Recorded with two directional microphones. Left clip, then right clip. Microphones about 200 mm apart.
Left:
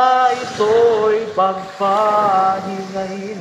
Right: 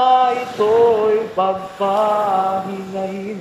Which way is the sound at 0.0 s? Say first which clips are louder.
Even; 15° right (ahead or behind).